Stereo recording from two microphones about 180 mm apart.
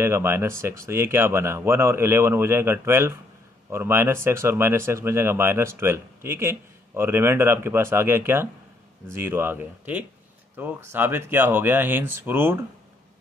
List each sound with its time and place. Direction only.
0.0 s speech: 15° right (ahead or behind)